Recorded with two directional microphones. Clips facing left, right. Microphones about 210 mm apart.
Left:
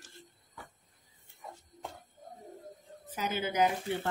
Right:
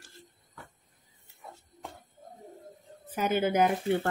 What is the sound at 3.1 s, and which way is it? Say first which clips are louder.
Speech: right 6 dB; 55° right (ahead or behind).